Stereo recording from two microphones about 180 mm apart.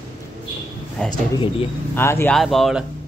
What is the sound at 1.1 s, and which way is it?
Speech, 30° left (ahead or behind).